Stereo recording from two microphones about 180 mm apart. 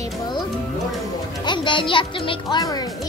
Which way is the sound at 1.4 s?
25° left (ahead or behind).